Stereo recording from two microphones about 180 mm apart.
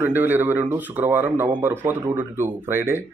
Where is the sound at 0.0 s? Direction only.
10° right (ahead or behind).